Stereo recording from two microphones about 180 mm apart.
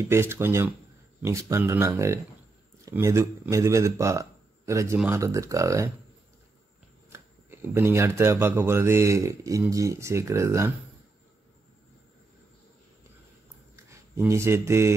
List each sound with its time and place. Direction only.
0.0 s speech: 15° right (ahead or behind)
4.9 s speech: 5° right (ahead or behind)
5.2 s speech: 20° right (ahead or behind)
7.1 s speech: 15° right (ahead or behind)
13.8 s speech: 15° right (ahead or behind)